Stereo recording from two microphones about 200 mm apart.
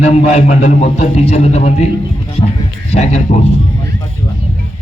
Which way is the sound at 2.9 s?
30° left (ahead or behind).